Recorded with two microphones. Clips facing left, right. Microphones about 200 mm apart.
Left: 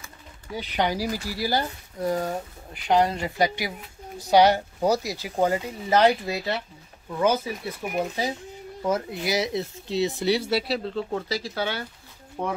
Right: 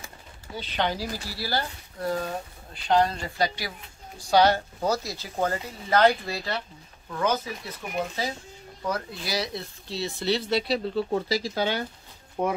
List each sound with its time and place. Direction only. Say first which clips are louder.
0.6 s speech: left 3 dB; 15° left (ahead or behind)
8.8 s speech: left 5 dB; 20° left (ahead or behind)
11.0 s speech: right 2 dB; 10° right (ahead or behind)